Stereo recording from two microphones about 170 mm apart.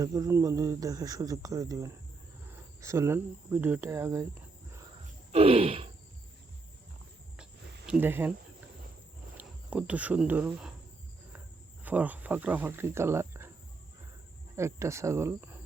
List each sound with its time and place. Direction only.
0.0 s speech: 20° right (ahead or behind)
5.3 s a sound: 35° right (ahead or behind)
7.9 s speech: 10° right (ahead or behind)
9.4 s speech: 10° right (ahead or behind)
11.8 s speech: 10° right (ahead or behind)
14.5 s speech: 15° right (ahead or behind)